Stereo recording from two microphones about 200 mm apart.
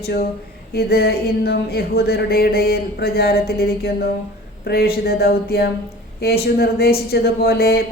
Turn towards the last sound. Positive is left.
turn(degrees=50)  # may be behind; listen again after turning